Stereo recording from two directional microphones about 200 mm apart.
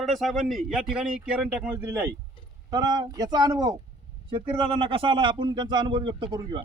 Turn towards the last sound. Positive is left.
turn(degrees=-25)  # may be behind; listen again after turning